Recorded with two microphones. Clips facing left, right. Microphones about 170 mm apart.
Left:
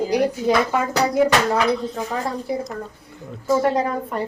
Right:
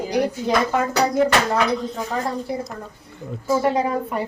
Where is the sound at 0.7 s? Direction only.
5° left (ahead or behind).